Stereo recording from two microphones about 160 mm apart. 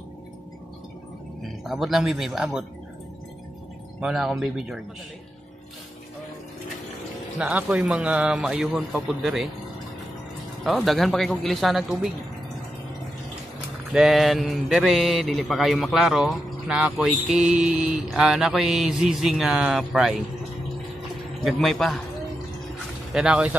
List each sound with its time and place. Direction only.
1.6 s speech: centre (ahead or behind)
4.0 s speech: 5° right (ahead or behind)
7.3 s speech: 5° right (ahead or behind)
10.6 s speech: centre (ahead or behind)
13.9 s speech: centre (ahead or behind)
21.5 s speech: centre (ahead or behind)
23.1 s speech: 5° right (ahead or behind)